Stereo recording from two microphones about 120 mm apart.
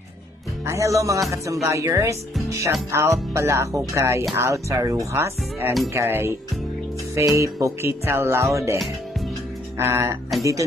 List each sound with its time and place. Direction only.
0.7 s music: 25° right (ahead or behind)
9.8 s music: 20° right (ahead or behind)